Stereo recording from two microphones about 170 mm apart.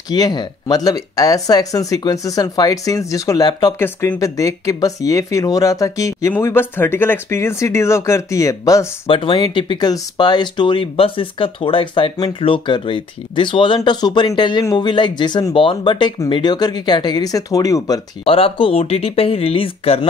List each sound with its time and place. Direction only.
0.1 s speech: 25° left (ahead or behind)
9.0 s speech: 30° left (ahead or behind)
18.2 s speech: 35° left (ahead or behind)